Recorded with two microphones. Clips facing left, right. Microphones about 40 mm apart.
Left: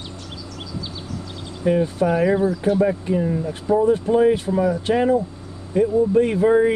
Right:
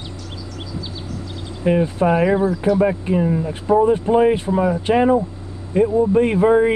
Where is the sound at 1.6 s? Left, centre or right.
Right.